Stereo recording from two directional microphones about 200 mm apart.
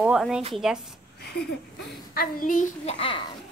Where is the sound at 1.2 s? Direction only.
55° left (ahead or behind).